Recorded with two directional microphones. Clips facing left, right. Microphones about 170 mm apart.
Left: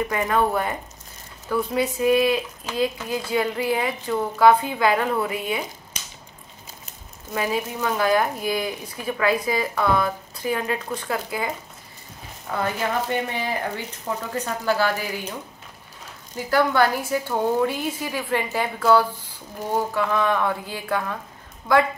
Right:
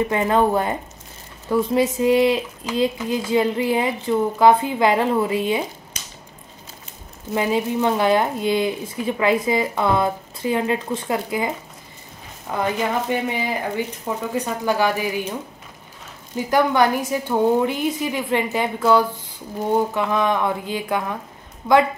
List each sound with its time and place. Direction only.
0.1 s speech: 25° right (ahead or behind)
7.3 s speech: 25° right (ahead or behind)
16.4 s speech: 15° right (ahead or behind)